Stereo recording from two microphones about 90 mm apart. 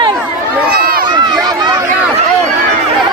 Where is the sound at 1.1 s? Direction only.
50° right (ahead or behind).